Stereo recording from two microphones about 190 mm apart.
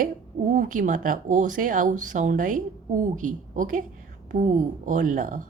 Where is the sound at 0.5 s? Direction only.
45° right (ahead or behind).